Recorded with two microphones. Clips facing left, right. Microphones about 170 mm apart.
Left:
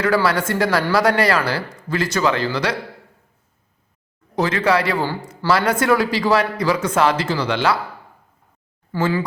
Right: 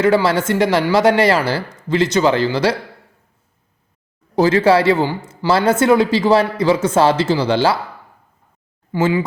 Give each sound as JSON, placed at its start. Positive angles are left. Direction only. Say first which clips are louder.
{"t": 0.0, "sound": "speech", "louder": "right 4 dB", "side_deg": -25}
{"t": 4.4, "sound": "speech", "louder": "right 6 dB", "side_deg": -30}
{"t": 8.9, "sound": "speech", "louder": "right 4 dB", "side_deg": -20}